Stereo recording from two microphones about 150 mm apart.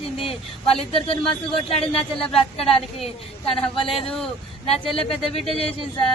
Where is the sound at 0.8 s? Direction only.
40° left (ahead or behind).